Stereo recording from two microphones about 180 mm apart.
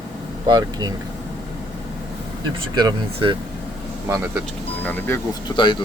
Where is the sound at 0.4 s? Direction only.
25° right (ahead or behind).